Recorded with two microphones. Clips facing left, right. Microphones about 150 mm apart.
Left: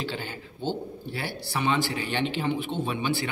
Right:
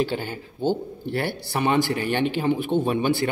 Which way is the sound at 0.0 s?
45° right (ahead or behind).